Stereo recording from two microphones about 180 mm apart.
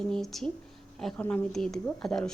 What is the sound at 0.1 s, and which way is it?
Speech, centre (ahead or behind).